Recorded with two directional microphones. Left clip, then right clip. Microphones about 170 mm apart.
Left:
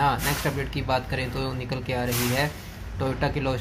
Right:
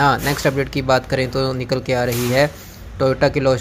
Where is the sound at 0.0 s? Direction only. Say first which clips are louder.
Right 8 dB; 45° right (ahead or behind).